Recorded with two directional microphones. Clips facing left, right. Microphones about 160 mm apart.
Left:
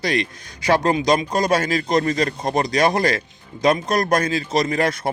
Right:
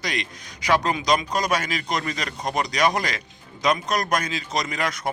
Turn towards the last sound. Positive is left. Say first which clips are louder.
# left 7 dB
turn(degrees=30)  # may be behind; listen again after turning